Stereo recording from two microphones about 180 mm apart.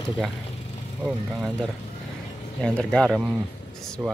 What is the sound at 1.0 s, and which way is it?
Speech, centre (ahead or behind).